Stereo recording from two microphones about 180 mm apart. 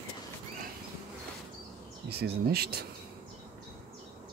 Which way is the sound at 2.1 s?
60° right (ahead or behind).